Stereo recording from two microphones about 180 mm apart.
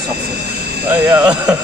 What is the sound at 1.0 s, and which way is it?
Speech, 5° right (ahead or behind).